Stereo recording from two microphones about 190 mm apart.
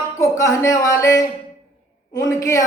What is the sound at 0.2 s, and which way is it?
Speech, 15° left (ahead or behind).